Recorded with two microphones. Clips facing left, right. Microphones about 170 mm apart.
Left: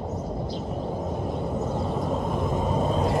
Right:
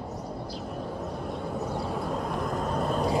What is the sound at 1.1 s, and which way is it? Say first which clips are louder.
Vehicle: left 4 dB; centre (ahead or behind).